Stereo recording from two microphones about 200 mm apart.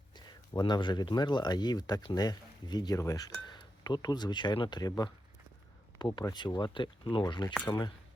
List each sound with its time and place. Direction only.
0.1 s speech: 20° left (ahead or behind)